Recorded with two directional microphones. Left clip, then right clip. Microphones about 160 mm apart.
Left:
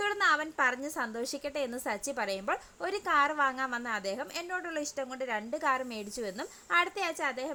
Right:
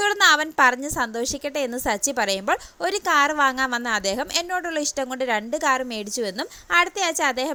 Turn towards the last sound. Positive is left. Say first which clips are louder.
# right 10 dB
turn(degrees=-35)  # may be behind; listen again after turning